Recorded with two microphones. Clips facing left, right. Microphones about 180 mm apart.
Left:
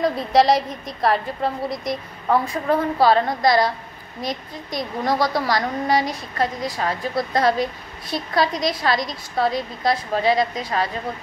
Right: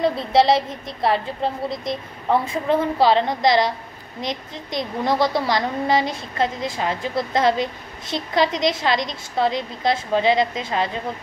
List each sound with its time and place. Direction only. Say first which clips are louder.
0.3 s a woman's voice: left 1 dB; 25° right (ahead or behind)